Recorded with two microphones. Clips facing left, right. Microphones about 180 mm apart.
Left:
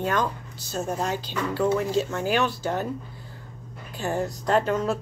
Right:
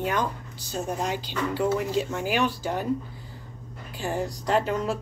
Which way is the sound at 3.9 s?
10° right (ahead or behind).